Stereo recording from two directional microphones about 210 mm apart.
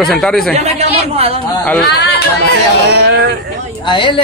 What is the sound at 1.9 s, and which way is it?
Chatter, 50° left (ahead or behind).